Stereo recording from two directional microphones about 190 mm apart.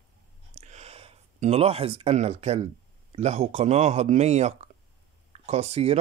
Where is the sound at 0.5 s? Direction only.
35° right (ahead or behind).